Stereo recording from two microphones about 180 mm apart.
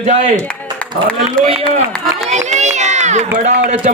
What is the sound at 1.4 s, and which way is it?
Speech, 5° left (ahead or behind).